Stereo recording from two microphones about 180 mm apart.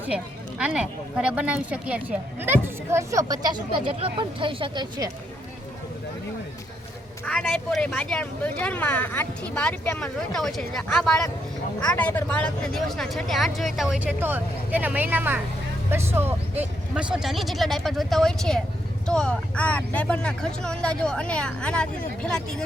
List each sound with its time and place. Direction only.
0.6 s speech: 5° right (ahead or behind); by 5.1 s 20° right (ahead or behind)
7.3 s speech: centre (ahead or behind)